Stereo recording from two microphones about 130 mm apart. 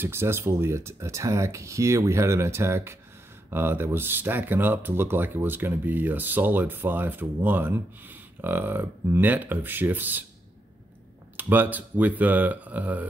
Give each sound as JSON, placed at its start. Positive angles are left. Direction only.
{"t": 0.0, "sound": "speech", "side_deg": -20}
{"t": 11.3, "sound": "speech", "side_deg": -15}